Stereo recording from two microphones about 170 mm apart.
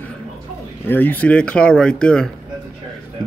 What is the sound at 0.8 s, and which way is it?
Speech, 10° left (ahead or behind).